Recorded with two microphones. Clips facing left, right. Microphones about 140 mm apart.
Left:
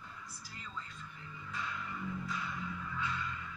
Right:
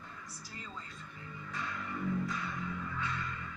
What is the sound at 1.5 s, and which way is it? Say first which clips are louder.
Music: right 1 dB; 45° right (ahead or behind).